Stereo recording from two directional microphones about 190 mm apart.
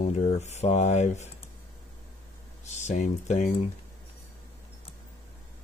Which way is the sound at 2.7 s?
40° left (ahead or behind).